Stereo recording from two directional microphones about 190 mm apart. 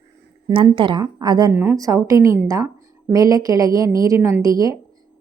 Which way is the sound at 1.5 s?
10° right (ahead or behind).